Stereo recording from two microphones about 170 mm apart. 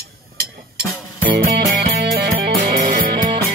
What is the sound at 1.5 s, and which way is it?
Music, 65° right (ahead or behind).